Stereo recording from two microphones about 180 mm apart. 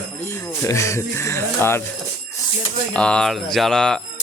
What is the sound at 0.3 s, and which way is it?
Speech, 15° left (ahead or behind).